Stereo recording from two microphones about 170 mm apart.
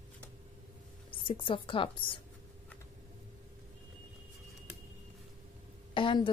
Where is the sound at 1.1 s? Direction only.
30° left (ahead or behind).